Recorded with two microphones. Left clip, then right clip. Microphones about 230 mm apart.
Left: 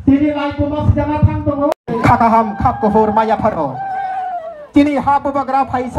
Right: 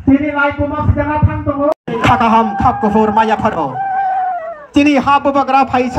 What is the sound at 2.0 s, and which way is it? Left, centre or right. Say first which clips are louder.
Speech: right 1 dB; left.